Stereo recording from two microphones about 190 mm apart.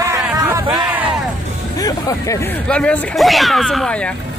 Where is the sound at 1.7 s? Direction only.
20° left (ahead or behind).